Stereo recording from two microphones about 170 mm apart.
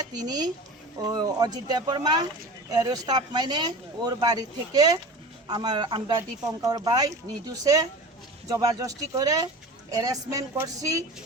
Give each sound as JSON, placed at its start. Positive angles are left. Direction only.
{"t": 0.1, "sound": "speech", "side_deg": -25}